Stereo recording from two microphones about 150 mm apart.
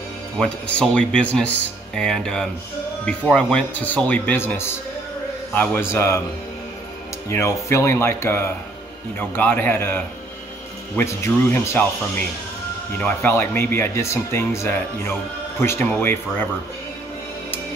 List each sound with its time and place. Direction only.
0.4 s speech: 5° left (ahead or behind)
7.2 s speech: 20° left (ahead or behind)
11.0 s speech: 15° left (ahead or behind)
13.0 s speech: 15° left (ahead or behind)